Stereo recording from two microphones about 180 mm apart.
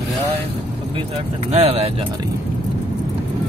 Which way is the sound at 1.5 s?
35° right (ahead or behind).